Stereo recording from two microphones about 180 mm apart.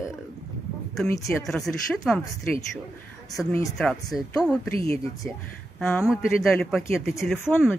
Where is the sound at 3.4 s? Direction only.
5° right (ahead or behind).